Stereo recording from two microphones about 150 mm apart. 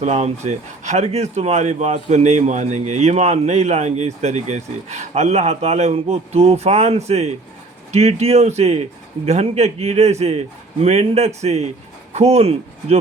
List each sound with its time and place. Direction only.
0.0 s speech: 45° right (ahead or behind)